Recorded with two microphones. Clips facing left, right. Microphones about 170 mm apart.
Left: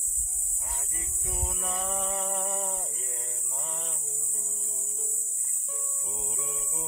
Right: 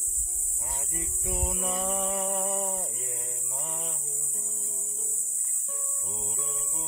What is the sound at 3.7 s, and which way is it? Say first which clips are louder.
Mantra: right 1 dB; 10° right (ahead or behind).